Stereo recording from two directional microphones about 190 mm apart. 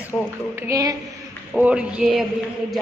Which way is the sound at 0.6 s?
15° right (ahead or behind).